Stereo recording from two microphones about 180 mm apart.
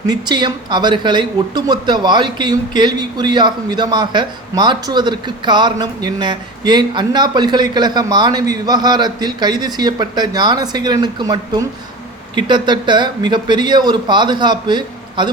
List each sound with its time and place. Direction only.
0.1 s speech: 25° right (ahead or behind)